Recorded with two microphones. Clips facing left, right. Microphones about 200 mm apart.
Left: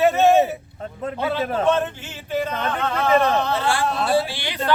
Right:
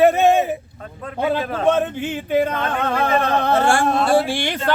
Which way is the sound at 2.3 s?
55° right (ahead or behind).